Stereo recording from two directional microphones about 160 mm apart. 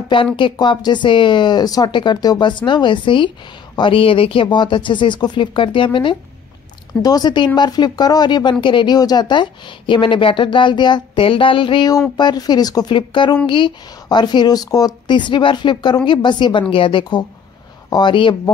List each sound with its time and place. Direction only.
0.1 s speech: 30° left (ahead or behind)